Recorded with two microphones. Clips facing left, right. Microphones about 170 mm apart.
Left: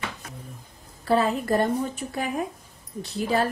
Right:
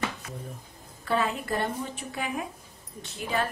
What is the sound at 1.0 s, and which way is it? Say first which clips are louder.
A woman's voice: left 6 dB; 35° left (ahead or behind).